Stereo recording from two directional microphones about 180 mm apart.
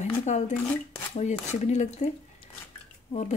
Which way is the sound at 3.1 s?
40° left (ahead or behind).